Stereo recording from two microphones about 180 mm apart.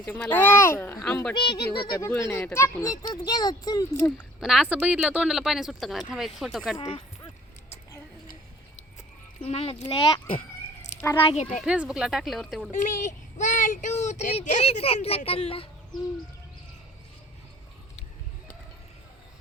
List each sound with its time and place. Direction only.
0.0 s speech: 10° left (ahead or behind)
1.4 s a child's voice: 25° left (ahead or behind)
2.0 s a child's voice: 15° left (ahead or behind)
4.4 s speech: 5° right (ahead or behind)
6.7 s speech: 25° left (ahead or behind)
9.4 s a child's voice: 35° left (ahead or behind)
11.6 s speech: 5° right (ahead or behind)
12.7 s speech: 45° left (ahead or behind)